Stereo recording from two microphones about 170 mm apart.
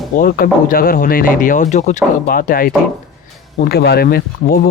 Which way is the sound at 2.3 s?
60° left (ahead or behind).